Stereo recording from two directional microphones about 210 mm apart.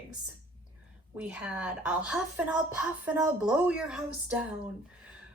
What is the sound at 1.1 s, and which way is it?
Speech, 5° right (ahead or behind).